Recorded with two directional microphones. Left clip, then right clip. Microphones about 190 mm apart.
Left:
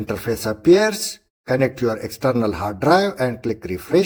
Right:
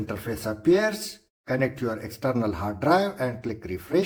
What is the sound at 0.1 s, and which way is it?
Speech, 35° left (ahead or behind).